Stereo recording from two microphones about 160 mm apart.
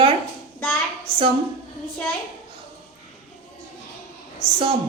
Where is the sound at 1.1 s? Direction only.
35° right (ahead or behind).